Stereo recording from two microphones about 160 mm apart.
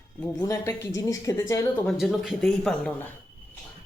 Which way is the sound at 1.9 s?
Centre (ahead or behind).